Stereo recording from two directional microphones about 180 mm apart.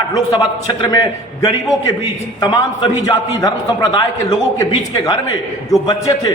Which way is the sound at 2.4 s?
25° left (ahead or behind).